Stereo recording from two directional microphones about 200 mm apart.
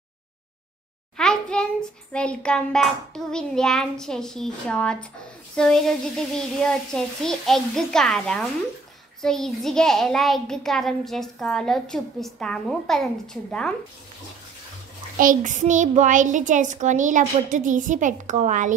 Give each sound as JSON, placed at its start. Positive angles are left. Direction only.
{"t": 1.1, "sound": "a child's voice", "side_deg": 5}
{"t": 15.1, "sound": "a child's voice", "side_deg": -40}